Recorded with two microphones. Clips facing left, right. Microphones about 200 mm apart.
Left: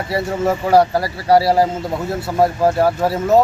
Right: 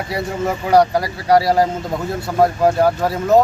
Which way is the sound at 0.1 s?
5° left (ahead or behind).